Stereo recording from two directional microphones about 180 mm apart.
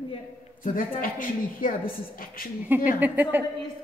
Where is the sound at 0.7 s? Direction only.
50° left (ahead or behind).